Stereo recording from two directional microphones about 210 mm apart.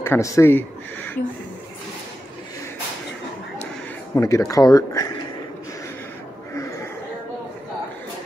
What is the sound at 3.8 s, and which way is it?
Speech, 10° left (ahead or behind).